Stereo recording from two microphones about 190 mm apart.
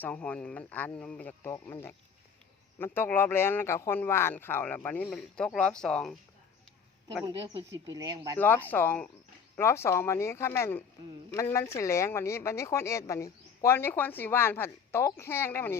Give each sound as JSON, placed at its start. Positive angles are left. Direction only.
{"t": 0.0, "sound": "speech", "side_deg": 5}
{"t": 7.3, "sound": "speech", "side_deg": -25}
{"t": 8.4, "sound": "speech", "side_deg": 10}